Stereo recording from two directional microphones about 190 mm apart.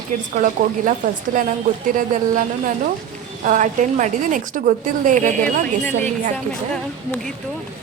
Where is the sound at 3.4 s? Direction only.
40° right (ahead or behind).